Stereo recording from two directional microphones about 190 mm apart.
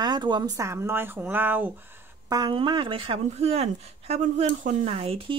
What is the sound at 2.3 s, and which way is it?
Speech, 25° right (ahead or behind).